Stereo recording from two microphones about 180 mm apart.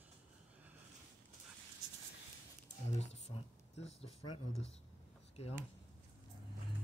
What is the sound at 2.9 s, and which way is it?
Speech, 35° left (ahead or behind).